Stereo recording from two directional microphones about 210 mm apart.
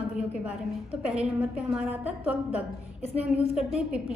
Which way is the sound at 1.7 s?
5° right (ahead or behind).